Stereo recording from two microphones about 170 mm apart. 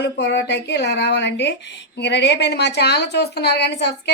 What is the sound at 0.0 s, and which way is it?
Speech, 80° left.